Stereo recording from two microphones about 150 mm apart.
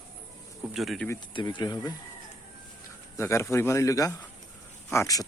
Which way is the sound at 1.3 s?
35° left (ahead or behind).